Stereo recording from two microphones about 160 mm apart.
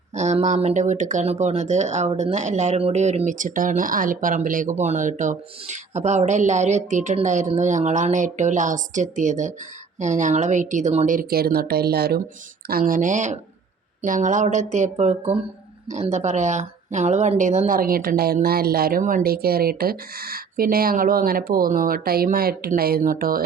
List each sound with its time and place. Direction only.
0.1 s speech: 45° right (ahead or behind); by 12.2 s 75° right (ahead or behind)
12.6 s speech: 65° right (ahead or behind)